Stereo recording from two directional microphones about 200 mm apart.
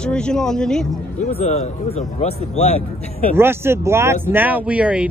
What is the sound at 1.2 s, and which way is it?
Speech, 35° left (ahead or behind).